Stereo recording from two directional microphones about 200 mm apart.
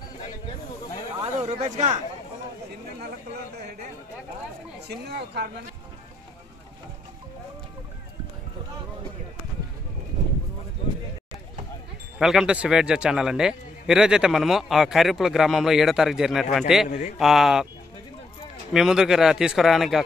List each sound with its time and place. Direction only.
1.2 s speech: 35° right (ahead or behind)
4.8 s speech: 55° right (ahead or behind)
12.2 s a man's voice: centre (ahead or behind)
18.7 s a man's voice: centre (ahead or behind)